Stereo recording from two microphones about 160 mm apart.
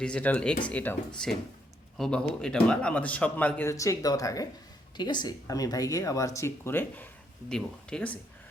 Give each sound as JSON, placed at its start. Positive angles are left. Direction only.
{"t": 0.0, "sound": "a man's voice", "side_deg": 10}